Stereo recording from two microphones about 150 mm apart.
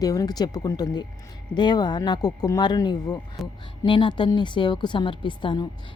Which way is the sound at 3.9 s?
35° left (ahead or behind).